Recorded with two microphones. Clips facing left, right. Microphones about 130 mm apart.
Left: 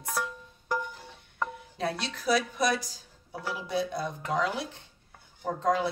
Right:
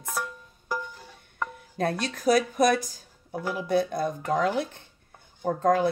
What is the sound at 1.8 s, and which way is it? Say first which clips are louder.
Speech: right 5 dB; 50° right (ahead or behind).